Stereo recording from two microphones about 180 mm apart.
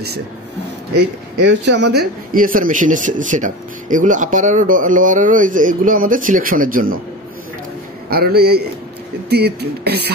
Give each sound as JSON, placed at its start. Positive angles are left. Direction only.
{"t": 0.9, "sound": "speech", "side_deg": -70}
{"t": 8.1, "sound": "speech", "side_deg": -60}